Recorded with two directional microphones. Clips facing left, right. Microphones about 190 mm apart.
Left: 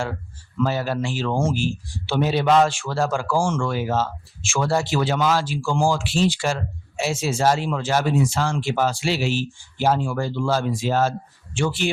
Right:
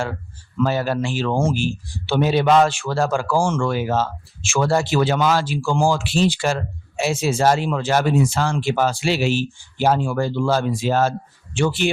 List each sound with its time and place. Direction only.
0.6 s speech: 60° right (ahead or behind)